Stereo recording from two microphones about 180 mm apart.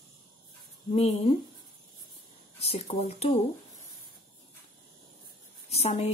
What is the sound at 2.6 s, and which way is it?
Speech, 35° left (ahead or behind).